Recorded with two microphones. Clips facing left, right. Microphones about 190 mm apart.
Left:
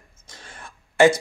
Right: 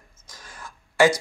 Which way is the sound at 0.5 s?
25° left (ahead or behind).